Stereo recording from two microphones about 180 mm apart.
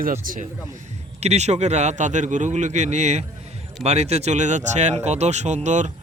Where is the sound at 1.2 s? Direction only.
40° right (ahead or behind).